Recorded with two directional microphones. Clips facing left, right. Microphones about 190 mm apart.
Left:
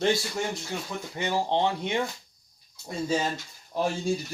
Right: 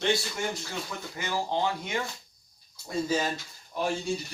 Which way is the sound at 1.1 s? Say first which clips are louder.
Left 4 dB; 25° left (ahead or behind).